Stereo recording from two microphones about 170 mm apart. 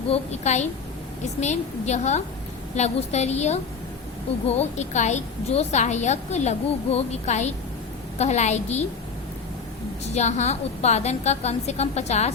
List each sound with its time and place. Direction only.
0.1 s a woman's voice: 40° left (ahead or behind)
10.2 s a woman's voice: 40° left (ahead or behind)